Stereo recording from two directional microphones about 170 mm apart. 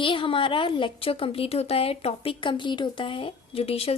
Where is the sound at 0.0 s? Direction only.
30° left (ahead or behind).